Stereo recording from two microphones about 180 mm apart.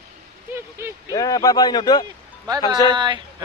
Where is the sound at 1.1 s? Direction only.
20° left (ahead or behind).